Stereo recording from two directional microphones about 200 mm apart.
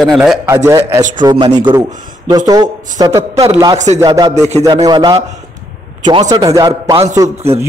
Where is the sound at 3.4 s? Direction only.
30° right (ahead or behind).